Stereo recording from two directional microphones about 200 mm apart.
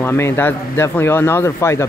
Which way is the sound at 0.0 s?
10° left (ahead or behind).